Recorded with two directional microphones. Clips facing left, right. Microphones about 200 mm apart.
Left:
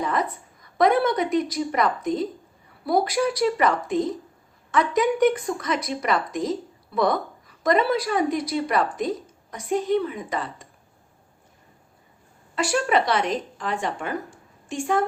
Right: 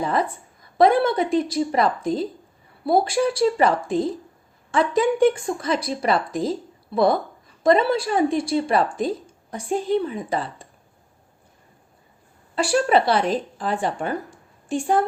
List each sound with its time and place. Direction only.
0.0 s a woman's voice: 30° right (ahead or behind)
12.5 s a woman's voice: 30° right (ahead or behind)